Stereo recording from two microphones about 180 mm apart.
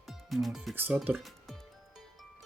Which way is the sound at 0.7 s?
10° right (ahead or behind).